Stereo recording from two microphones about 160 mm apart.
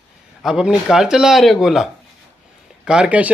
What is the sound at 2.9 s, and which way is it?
Speech, 5° right (ahead or behind).